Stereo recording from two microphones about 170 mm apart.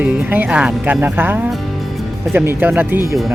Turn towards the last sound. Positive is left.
turn(degrees=-15)  # may be behind; listen again after turning